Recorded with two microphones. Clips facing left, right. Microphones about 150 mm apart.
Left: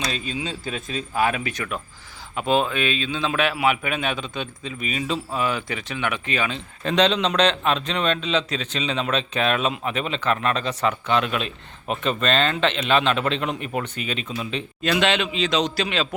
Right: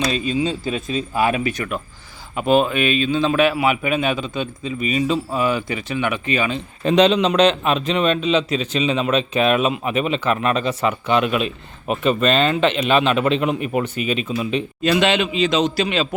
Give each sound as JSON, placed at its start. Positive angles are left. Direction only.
{"t": 0.9, "sound": "a man's voice", "side_deg": -5}